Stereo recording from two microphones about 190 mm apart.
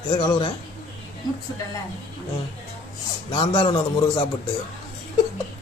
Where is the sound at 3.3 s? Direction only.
25° left (ahead or behind).